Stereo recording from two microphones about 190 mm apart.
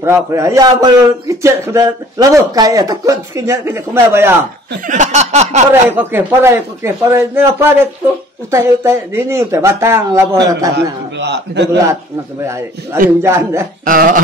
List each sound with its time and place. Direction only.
0.0 s a man's voice: 15° right (ahead or behind)
4.8 s a sound: 40° right (ahead or behind)
5.7 s a man's voice: 10° right (ahead or behind)
11.1 s a man's voice: 65° right (ahead or behind)
12.4 s a man's voice: 15° right (ahead or behind)
13.8 s a sound: 45° right (ahead or behind)